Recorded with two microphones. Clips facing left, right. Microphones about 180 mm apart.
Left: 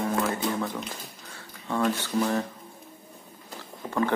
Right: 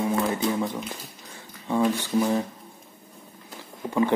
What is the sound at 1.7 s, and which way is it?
Speech, 15° right (ahead or behind).